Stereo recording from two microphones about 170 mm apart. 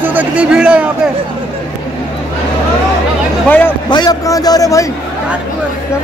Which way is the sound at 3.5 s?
10° left (ahead or behind).